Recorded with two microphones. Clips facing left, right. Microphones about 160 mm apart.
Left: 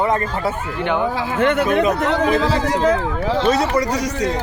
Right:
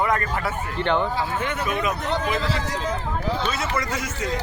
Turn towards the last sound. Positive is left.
turn(degrees=35)  # may be behind; listen again after turning